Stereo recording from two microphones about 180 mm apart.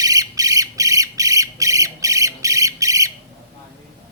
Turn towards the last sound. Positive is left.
turn(degrees=-20)  # may be behind; listen again after turning